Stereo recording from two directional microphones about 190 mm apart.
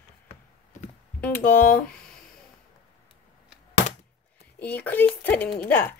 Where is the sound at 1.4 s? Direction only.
50° left (ahead or behind).